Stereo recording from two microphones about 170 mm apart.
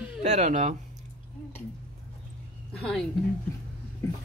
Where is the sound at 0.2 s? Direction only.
40° right (ahead or behind).